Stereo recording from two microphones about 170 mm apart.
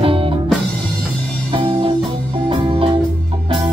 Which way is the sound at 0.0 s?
30° right (ahead or behind).